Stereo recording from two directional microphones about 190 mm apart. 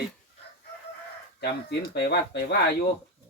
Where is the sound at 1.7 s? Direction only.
60° left (ahead or behind).